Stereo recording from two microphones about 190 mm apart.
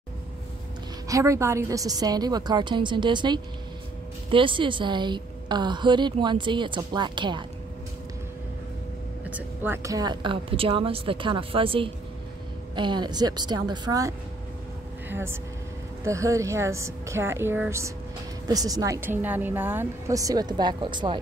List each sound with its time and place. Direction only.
1.0 s a woman's voice: 15° right (ahead or behind)
9.3 s a woman's voice: 10° right (ahead or behind)